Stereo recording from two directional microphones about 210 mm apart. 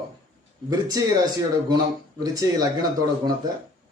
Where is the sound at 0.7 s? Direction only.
15° right (ahead or behind).